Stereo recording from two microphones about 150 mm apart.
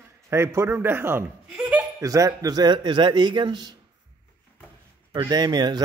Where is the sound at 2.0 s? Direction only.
25° right (ahead or behind).